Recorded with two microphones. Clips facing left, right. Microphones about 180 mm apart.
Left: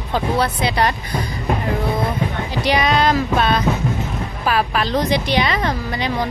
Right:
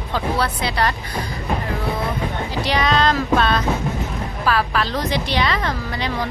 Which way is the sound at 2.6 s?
15° left (ahead or behind).